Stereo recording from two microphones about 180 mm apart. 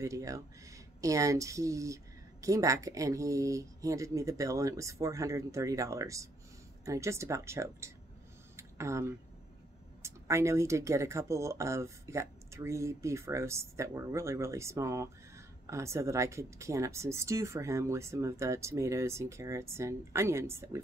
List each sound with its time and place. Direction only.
0.0 s speech: 15° right (ahead or behind)
8.5 s a sound: 15° right (ahead or behind)
10.0 s speech: 15° right (ahead or behind)